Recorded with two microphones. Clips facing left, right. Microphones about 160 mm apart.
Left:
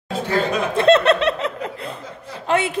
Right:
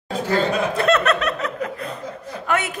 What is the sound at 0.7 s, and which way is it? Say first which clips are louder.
A woman's voice: left 7 dB; 30° left (ahead or behind).